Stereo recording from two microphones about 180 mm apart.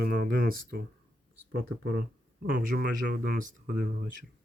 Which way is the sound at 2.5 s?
55° right (ahead or behind).